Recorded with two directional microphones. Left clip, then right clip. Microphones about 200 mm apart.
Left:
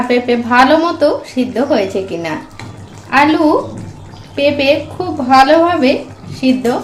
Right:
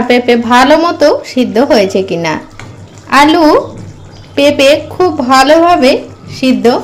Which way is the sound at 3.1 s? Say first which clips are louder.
Right 4 dB; 40° right (ahead or behind).